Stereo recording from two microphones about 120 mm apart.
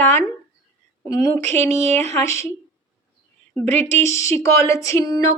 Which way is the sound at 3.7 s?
70° right (ahead or behind).